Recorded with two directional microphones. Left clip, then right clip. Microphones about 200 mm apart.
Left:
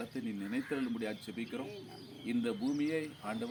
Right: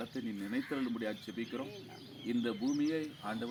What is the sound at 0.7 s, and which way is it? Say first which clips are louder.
Speech: even; 25° left (ahead or behind).